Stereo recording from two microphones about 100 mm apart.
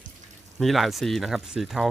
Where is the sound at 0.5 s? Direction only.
Centre (ahead or behind).